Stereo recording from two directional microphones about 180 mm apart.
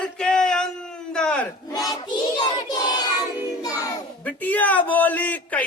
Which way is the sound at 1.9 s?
25° left (ahead or behind).